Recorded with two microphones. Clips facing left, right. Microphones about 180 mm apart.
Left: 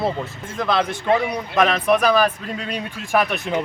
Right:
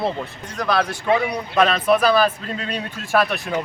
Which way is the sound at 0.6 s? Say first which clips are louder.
Even; 20° left (ahead or behind).